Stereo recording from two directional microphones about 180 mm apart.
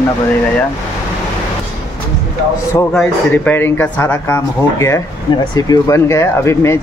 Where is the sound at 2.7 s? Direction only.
15° left (ahead or behind).